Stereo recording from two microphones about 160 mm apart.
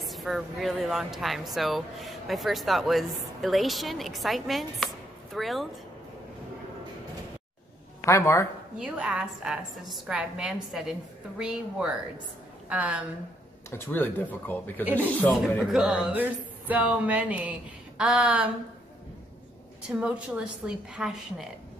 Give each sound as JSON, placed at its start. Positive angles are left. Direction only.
{"t": 0.0, "sound": "speech", "side_deg": 0}
{"t": 8.0, "sound": "speech", "side_deg": 20}
{"t": 8.7, "sound": "a woman's voice", "side_deg": -5}
{"t": 13.7, "sound": "speech", "side_deg": 15}
{"t": 19.9, "sound": "speech", "side_deg": -5}